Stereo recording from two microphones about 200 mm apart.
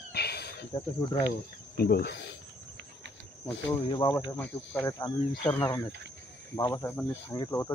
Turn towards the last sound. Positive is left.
turn(degrees=15)  # may be behind; listen again after turning